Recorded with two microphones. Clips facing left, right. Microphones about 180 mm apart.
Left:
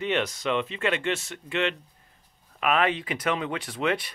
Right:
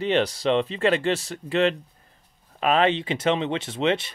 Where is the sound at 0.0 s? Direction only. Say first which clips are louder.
Right 5 dB; 35° right (ahead or behind).